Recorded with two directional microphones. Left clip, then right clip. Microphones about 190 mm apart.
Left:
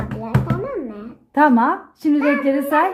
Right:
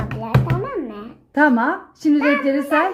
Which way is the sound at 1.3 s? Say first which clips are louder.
Left 2 dB; 25° left (ahead or behind).